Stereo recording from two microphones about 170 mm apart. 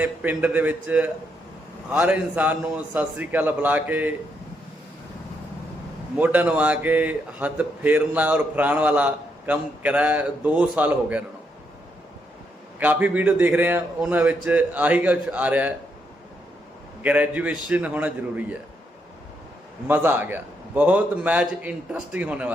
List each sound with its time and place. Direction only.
0.0 s a man's voice: 10° right (ahead or behind)
6.1 s a man's voice: 10° right (ahead or behind)
12.8 s a man's voice: 10° right (ahead or behind)
17.0 s a man's voice: 10° right (ahead or behind)
19.9 s a man's voice: 10° right (ahead or behind)